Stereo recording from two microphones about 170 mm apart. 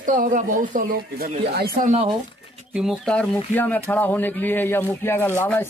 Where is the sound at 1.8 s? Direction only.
40° right (ahead or behind).